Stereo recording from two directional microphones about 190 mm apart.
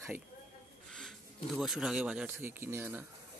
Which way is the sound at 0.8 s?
Centre (ahead or behind).